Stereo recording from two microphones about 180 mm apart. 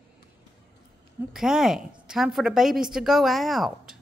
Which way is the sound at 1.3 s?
5° right (ahead or behind).